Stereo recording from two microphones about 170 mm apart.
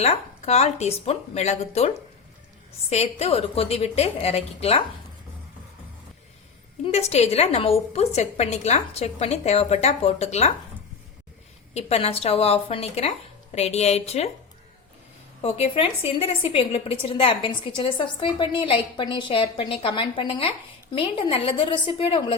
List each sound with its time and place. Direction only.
0.0 s a woman's voice: 40° left (ahead or behind)
2.9 s a woman's voice: 40° left (ahead or behind)
6.8 s a woman's voice: 40° left (ahead or behind)
11.7 s a woman's voice: 40° left (ahead or behind)
15.4 s a woman's voice: 35° left (ahead or behind)